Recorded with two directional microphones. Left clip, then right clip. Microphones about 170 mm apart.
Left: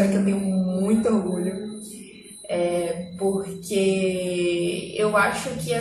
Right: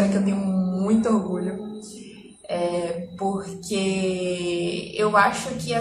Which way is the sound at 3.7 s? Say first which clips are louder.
Left 3 dB; 5° right (ahead or behind).